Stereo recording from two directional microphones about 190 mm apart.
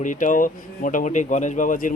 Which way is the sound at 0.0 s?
40° left (ahead or behind).